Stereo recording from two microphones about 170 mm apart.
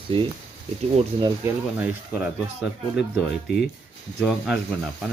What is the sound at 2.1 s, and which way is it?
Speech, 5° right (ahead or behind).